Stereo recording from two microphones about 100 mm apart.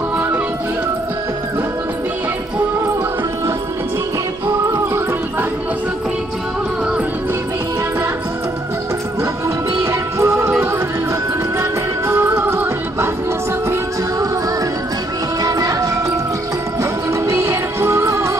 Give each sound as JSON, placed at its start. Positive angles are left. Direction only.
{"t": 4.5, "sound": "music", "side_deg": -30}
{"t": 10.1, "sound": "music", "side_deg": -25}
{"t": 12.1, "sound": "music", "side_deg": -25}
{"t": 15.4, "sound": "music", "side_deg": -35}
{"t": 17.1, "sound": "music", "side_deg": -30}